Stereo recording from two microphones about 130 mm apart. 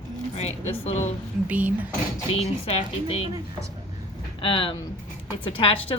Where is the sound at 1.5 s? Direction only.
10° right (ahead or behind).